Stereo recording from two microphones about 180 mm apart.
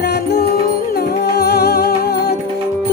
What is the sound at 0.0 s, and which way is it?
Music, 65° left (ahead or behind).